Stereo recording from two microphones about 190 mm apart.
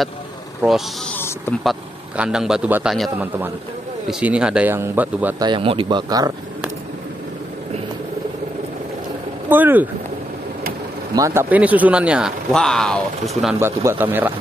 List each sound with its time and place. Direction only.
0.6 s speech: centre (ahead or behind)
5.4 s speech: 25° right (ahead or behind)
9.5 s speech: 10° right (ahead or behind)
11.1 s speech: 15° right (ahead or behind)
13.6 s speech: 10° right (ahead or behind)